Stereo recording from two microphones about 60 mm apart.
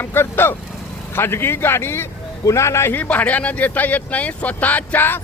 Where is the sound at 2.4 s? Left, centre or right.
Left.